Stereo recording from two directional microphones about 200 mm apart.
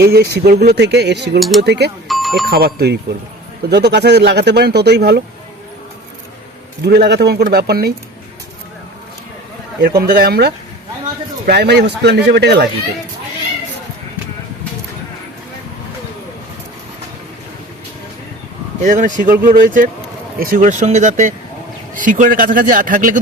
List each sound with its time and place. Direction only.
0.0 s speech: 50° right (ahead or behind)
1.4 s speech: centre (ahead or behind)
1.6 s speech: 55° right (ahead or behind)
2.0 s a sound: centre (ahead or behind)
2.5 s speech: 50° right (ahead or behind)
6.8 s speech: 55° right (ahead or behind)
9.8 s speech: 50° right (ahead or behind)
18.8 s a man's voice: 40° right (ahead or behind)